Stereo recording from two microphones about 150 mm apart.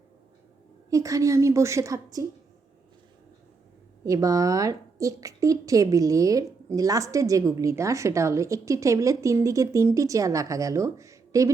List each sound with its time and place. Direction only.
0.9 s a woman's voice: 20° right (ahead or behind)
4.0 s a woman's voice: 20° right (ahead or behind)